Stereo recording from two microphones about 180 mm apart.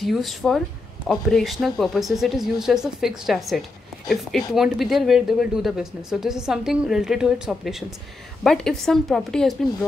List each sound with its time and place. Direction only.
0.0 s speech: centre (ahead or behind)